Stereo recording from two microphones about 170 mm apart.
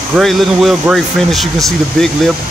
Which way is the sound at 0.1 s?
Centre (ahead or behind).